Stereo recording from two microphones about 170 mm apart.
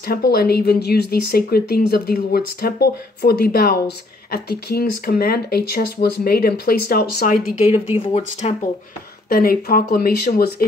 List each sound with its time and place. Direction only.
0.3 s speech: 65° left (ahead or behind)
8.0 s speech: 40° left (ahead or behind)
9.3 s speech: 60° left (ahead or behind)